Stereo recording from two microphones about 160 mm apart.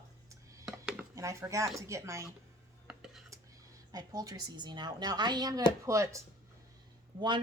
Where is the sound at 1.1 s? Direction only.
20° right (ahead or behind).